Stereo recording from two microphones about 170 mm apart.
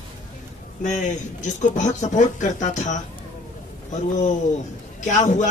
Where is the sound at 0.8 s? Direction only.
45° left (ahead or behind).